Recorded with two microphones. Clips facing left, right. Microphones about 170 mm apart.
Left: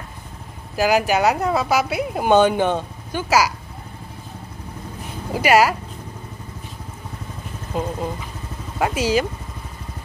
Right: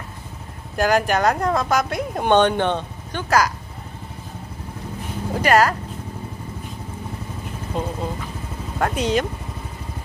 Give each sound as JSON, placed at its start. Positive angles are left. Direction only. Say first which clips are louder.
{"t": 0.7, "sound": "speech", "louder": "left 1 dB", "side_deg": 5}
{"t": 5.3, "sound": "speech", "louder": "left 1 dB", "side_deg": 10}
{"t": 7.7, "sound": "speech", "louder": "left 2 dB", "side_deg": 5}